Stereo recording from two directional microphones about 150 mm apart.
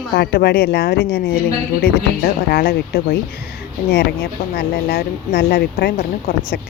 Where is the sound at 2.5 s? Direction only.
90° left.